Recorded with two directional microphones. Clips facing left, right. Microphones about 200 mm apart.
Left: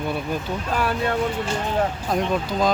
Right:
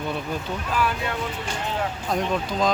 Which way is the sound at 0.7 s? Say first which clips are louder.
Left 3 dB; 45° left (ahead or behind).